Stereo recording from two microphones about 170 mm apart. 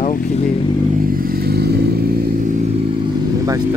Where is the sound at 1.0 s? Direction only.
60° right (ahead or behind).